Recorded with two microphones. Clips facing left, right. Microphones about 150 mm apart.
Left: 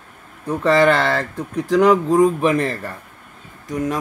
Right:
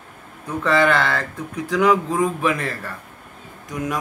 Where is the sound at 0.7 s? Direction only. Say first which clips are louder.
Left 3 dB; 35° left (ahead or behind).